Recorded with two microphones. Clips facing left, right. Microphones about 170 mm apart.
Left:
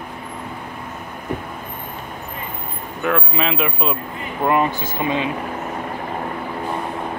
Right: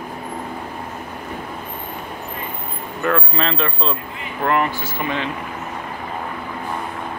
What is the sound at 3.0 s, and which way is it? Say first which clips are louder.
Speech: even; 5° left (ahead or behind).